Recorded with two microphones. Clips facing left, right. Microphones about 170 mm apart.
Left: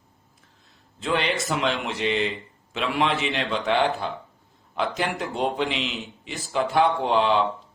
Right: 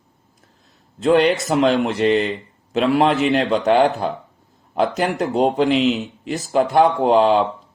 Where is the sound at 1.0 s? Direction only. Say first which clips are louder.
Right 10 dB; 40° right (ahead or behind).